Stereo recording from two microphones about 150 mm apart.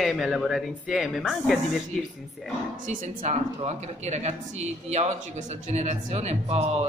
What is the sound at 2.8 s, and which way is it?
Speech, 55° right (ahead or behind).